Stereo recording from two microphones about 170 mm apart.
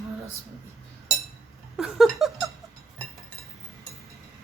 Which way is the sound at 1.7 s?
Centre (ahead or behind).